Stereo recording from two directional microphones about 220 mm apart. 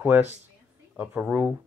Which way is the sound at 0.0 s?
10° right (ahead or behind).